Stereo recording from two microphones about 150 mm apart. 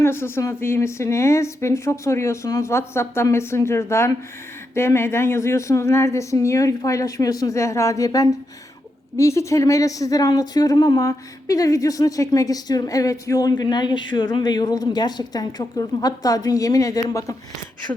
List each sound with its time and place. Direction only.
0.0 s speech: 15° left (ahead or behind)